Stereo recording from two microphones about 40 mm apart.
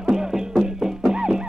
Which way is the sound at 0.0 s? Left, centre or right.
Centre.